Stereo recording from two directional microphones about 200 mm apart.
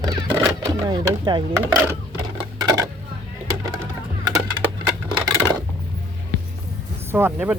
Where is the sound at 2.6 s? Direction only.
20° right (ahead or behind).